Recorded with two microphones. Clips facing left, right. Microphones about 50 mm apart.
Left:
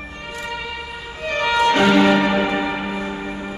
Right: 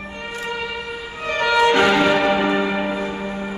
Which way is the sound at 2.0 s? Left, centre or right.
Centre.